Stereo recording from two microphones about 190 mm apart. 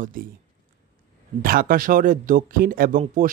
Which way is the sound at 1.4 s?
50° right (ahead or behind).